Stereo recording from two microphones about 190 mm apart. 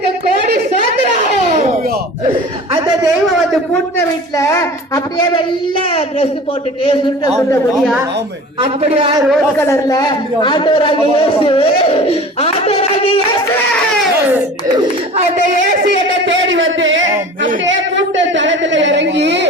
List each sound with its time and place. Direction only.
3.2 s a sound: centre (ahead or behind)
4.4 s child singing: 15° left (ahead or behind)
5.1 s speech: 25° left (ahead or behind)
6.8 s speech: 20° left (ahead or behind)
8.6 s a man's voice: 30° right (ahead or behind)
9.6 s speech: 15° left (ahead or behind)
15.7 s a sound: 70° right (ahead or behind)